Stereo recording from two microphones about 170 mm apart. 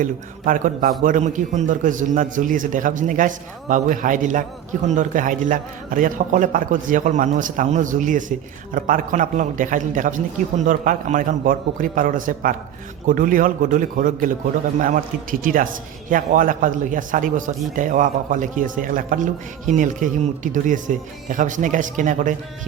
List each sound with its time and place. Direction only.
0.0 s a man's voice: 50° right (ahead or behind)